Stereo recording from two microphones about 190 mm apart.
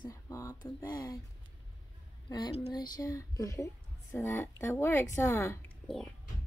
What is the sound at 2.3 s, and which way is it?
Speech, 25° left (ahead or behind).